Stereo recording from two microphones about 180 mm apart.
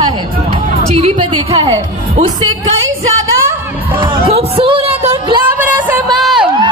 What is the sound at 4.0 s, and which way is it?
Speech, 30° right (ahead or behind).